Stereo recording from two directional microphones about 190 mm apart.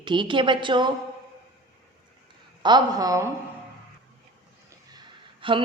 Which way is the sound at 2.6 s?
20° right (ahead or behind).